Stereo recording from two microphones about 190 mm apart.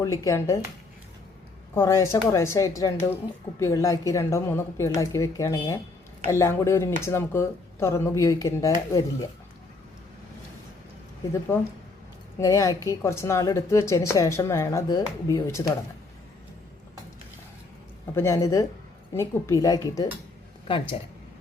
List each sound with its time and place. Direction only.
0.0 s speech: 15° left (ahead or behind)
1.7 s speech: 15° left (ahead or behind)
11.3 s speech: 15° left (ahead or behind)
18.1 s speech: 15° left (ahead or behind)